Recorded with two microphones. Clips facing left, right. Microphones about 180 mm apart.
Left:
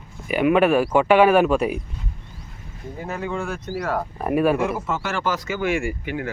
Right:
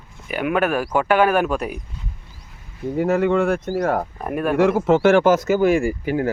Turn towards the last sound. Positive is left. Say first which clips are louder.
# right 6 dB
turn(degrees=-35)  # may be behind; listen again after turning